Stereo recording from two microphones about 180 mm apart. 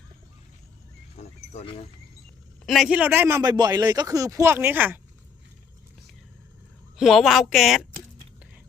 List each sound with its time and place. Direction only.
1.2 s a sound: 35° left (ahead or behind)
2.6 s a man's voice: centre (ahead or behind)
6.9 s speech: centre (ahead or behind)